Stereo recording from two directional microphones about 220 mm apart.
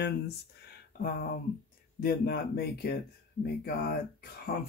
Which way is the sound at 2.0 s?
45° left (ahead or behind).